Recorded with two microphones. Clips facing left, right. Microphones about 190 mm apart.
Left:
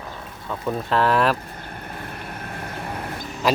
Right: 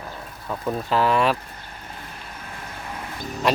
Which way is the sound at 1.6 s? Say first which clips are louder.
Left 5 dB; 55° left (ahead or behind).